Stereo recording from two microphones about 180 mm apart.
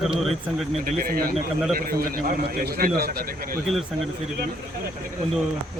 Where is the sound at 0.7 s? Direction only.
50° right (ahead or behind).